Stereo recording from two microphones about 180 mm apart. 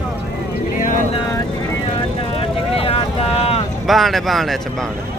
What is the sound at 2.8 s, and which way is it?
Vehicle, 30° left (ahead or behind).